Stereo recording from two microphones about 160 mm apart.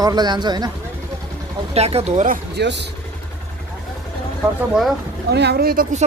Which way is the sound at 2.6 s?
90° right.